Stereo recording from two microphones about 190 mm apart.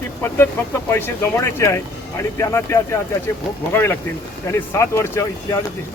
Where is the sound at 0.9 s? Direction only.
10° left (ahead or behind).